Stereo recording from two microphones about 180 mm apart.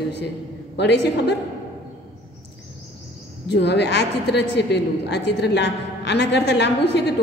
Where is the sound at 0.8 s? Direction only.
70° left (ahead or behind).